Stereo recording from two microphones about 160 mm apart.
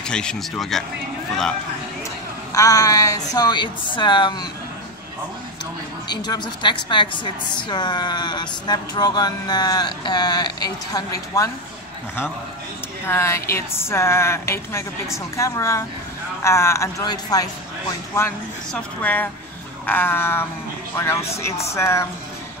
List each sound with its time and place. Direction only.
0.0 s speech: 5° left (ahead or behind)
2.5 s speech: 20° left (ahead or behind)
6.0 s speech: 25° left (ahead or behind)
13.0 s a woman's voice: 15° left (ahead or behind)
18.7 s a woman's voice: 10° left (ahead or behind)